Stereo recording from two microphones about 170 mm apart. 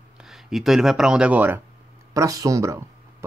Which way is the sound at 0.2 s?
Centre (ahead or behind).